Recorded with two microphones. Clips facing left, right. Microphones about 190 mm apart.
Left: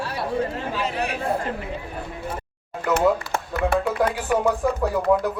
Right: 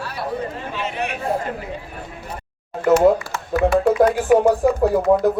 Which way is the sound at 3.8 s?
45° right (ahead or behind).